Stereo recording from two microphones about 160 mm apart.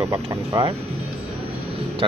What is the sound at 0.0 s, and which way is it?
Speech, 20° right (ahead or behind).